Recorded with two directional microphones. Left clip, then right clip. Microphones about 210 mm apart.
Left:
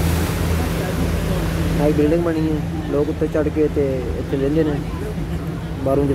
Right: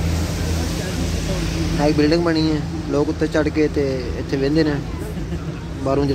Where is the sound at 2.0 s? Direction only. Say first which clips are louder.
Right 1 dB; 20° right (ahead or behind).